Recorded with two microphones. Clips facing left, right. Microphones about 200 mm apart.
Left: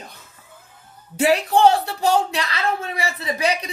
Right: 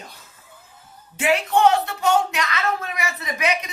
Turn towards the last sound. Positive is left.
turn(degrees=35)  # may be behind; listen again after turning